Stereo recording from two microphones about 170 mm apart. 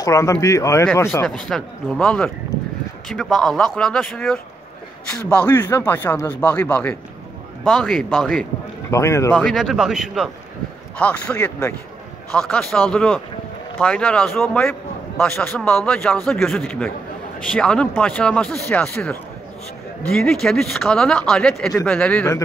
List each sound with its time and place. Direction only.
0.0 s a man's voice: 20° left (ahead or behind)
1.5 s speech: 5° left (ahead or behind)
5.6 s a man's voice: 10° left (ahead or behind)
8.9 s a man's voice: 15° left (ahead or behind)
9.4 s a man's voice: centre (ahead or behind)